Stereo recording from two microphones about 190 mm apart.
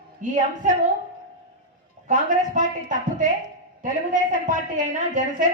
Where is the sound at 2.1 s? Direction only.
40° right (ahead or behind).